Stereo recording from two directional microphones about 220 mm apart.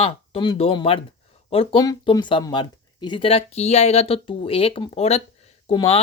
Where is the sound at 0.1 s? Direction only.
25° left (ahead or behind).